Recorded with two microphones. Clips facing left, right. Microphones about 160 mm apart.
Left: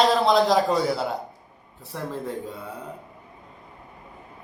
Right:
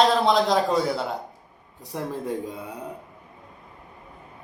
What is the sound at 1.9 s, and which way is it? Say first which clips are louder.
Speech: right 2 dB; 15° right (ahead or behind).